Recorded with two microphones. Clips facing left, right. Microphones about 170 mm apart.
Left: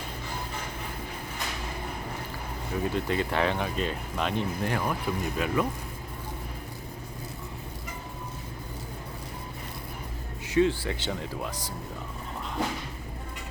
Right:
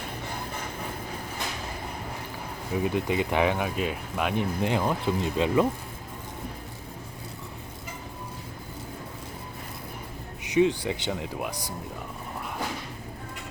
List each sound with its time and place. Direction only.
2.8 s speech: 15° right (ahead or behind)
10.4 s speech: 15° right (ahead or behind)